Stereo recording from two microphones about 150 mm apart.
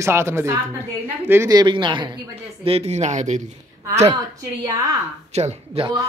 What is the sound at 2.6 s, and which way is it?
Speech, 40° right (ahead or behind).